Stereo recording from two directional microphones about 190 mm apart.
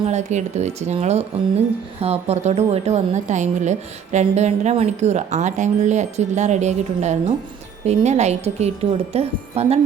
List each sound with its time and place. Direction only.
0.0 s speech: 35° right (ahead or behind)